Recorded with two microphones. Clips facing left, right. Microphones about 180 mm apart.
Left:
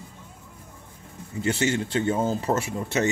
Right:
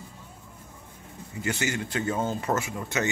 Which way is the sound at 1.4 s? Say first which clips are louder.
Left 5 dB; 30° left (ahead or behind).